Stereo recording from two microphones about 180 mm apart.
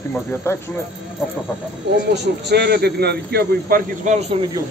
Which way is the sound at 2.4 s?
65° right (ahead or behind).